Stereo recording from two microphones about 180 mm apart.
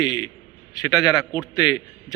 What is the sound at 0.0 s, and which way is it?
A man's voice, 20° left (ahead or behind).